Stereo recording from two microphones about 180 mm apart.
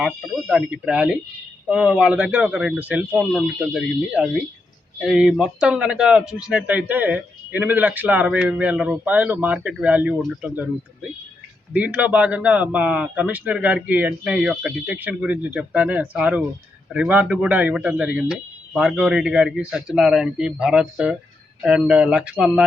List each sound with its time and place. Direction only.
0.0 s a man's voice: 5° right (ahead or behind)
11.7 s a man's voice: 10° right (ahead or behind)